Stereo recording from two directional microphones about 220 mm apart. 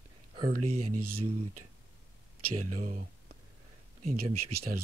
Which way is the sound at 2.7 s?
35° right (ahead or behind).